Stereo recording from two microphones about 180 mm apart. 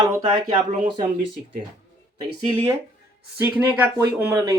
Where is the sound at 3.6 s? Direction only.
10° right (ahead or behind).